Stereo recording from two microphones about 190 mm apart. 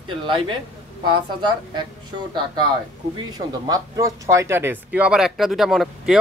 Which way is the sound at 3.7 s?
15° right (ahead or behind).